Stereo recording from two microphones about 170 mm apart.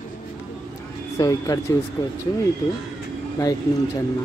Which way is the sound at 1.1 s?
20° left (ahead or behind).